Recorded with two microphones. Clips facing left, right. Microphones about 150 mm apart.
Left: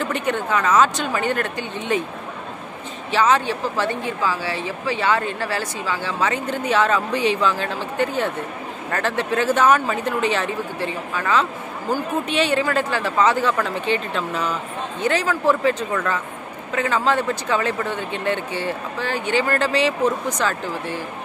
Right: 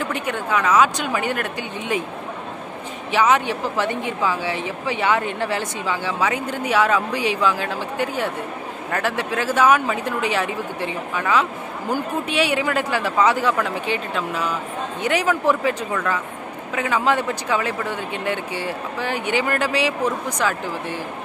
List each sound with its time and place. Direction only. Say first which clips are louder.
0.0 s speech: left 2 dB; 5° right (ahead or behind)
3.1 s speech: even; 15° right (ahead or behind)